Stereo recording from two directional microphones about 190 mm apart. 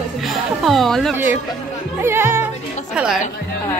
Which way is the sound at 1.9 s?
10° right (ahead or behind).